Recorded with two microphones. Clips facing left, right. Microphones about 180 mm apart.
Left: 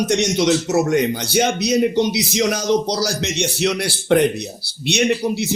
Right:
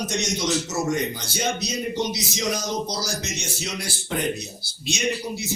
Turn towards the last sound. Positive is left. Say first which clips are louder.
# left 8 dB
turn(degrees=70)  # may be behind; listen again after turning